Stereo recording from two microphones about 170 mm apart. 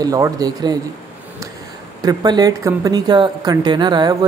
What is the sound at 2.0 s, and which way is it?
A woman's voice, 25° right (ahead or behind).